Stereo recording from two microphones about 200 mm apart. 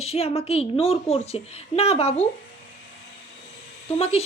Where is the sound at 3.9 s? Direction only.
30° left (ahead or behind).